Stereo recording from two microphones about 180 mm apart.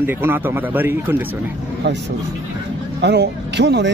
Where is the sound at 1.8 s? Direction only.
70° right (ahead or behind).